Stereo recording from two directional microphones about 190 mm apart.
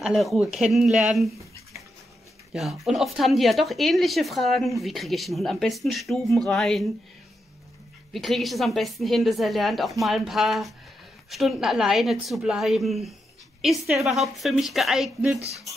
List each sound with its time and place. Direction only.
0.0 s speech: centre (ahead or behind)
2.5 s speech: centre (ahead or behind)
8.1 s speech: centre (ahead or behind)
15.3 s speech: 35° right (ahead or behind)